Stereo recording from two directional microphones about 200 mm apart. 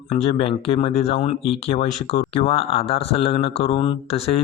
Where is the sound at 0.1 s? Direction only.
30° left (ahead or behind).